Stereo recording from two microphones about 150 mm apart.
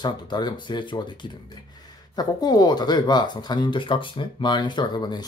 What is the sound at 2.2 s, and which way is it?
Speech, 25° left (ahead or behind).